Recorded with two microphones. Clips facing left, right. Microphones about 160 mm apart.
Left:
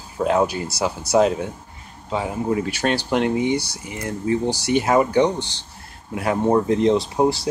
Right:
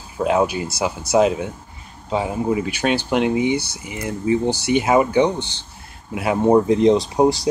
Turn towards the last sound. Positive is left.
turn(degrees=-15)  # may be behind; listen again after turning